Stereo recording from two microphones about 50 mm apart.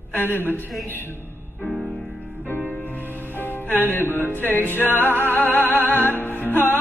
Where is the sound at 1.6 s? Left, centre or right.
Left.